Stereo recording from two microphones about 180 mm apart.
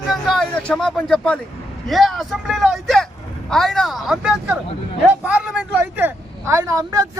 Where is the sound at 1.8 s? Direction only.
Centre (ahead or behind).